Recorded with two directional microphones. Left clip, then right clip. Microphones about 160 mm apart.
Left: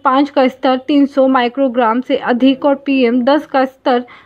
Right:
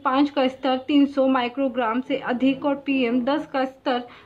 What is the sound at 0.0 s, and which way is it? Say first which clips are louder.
Speech: left 9 dB; 40° left (ahead or behind).